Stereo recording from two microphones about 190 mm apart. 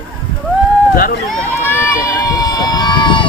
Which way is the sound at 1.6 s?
15° left (ahead or behind).